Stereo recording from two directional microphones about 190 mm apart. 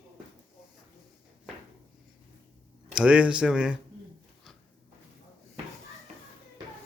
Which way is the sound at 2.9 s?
5° right (ahead or behind).